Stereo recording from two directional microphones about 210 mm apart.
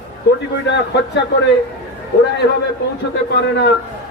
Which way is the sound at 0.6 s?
55° left (ahead or behind).